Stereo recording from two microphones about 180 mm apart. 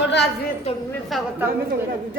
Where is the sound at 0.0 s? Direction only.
70° left (ahead or behind).